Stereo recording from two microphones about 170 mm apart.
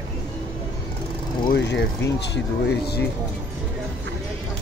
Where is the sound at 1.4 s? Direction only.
90° left.